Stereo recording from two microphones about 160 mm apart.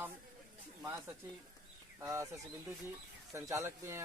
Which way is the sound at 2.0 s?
15° right (ahead or behind).